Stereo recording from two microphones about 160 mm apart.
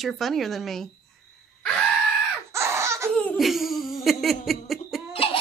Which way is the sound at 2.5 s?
15° right (ahead or behind).